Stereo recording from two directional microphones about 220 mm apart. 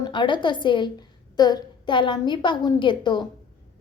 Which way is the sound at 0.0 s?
20° left (ahead or behind).